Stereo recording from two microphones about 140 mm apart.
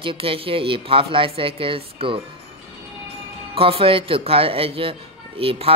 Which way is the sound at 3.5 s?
40° right (ahead or behind).